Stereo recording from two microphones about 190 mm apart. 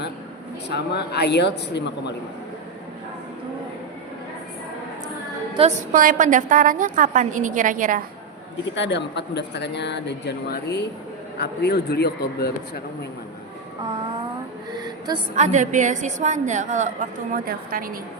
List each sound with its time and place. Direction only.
0.7 s speech: 60° left (ahead or behind)
5.5 s a woman's voice: 40° right (ahead or behind)
8.7 s speech: 70° left (ahead or behind)
14.8 s a sound: 20° right (ahead or behind)
15.4 s a woman's voice: 40° right (ahead or behind)